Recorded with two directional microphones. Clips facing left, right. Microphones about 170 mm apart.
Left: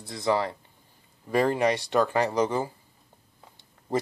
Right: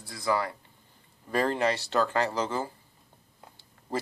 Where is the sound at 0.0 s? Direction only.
25° left (ahead or behind).